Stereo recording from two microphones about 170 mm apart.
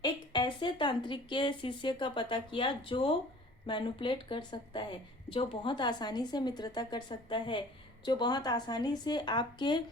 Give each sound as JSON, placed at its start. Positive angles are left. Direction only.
{"t": 0.0, "sound": "a woman's voice", "side_deg": 25}